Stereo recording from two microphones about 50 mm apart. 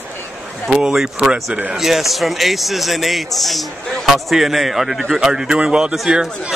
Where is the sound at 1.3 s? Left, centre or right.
Right.